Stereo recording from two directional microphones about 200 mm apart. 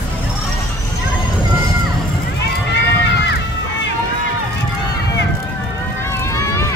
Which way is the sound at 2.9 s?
60° left (ahead or behind).